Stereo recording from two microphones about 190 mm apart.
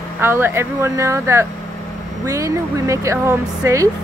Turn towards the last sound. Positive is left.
turn(degrees=-15)  # may be behind; listen again after turning